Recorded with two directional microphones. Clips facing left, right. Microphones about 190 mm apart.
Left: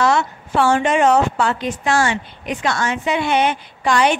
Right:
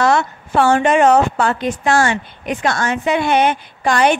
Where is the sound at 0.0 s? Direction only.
50° right (ahead or behind).